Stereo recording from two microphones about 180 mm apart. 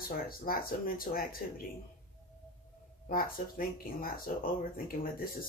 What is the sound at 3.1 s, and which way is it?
Speech, 50° left (ahead or behind).